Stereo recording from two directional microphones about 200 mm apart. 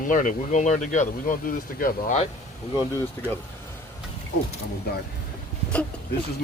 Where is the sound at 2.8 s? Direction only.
15° left (ahead or behind).